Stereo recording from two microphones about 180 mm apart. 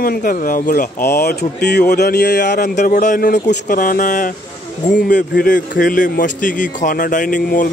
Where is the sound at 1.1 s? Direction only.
60° left (ahead or behind).